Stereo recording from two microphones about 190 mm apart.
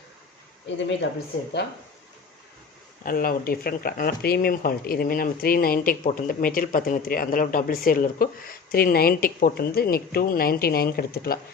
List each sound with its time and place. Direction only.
1.0 s a woman's voice: 65° left (ahead or behind)
3.0 s speech: 50° left (ahead or behind)